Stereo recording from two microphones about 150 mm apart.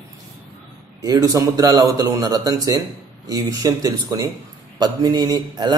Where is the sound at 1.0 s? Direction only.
25° right (ahead or behind).